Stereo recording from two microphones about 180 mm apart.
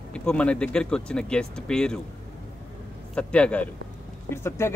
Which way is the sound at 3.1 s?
5° left (ahead or behind).